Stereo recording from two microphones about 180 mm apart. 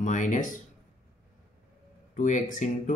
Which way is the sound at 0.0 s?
45° left (ahead or behind).